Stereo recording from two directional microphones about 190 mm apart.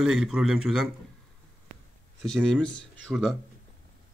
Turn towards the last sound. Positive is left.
turn(degrees=0)  # may be behind; listen again after turning